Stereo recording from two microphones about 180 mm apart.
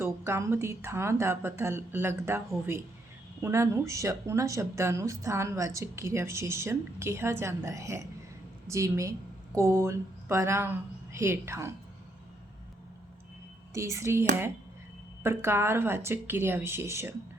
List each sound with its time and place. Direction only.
0.0 s speech: 15° right (ahead or behind)
13.7 s speech: 15° right (ahead or behind)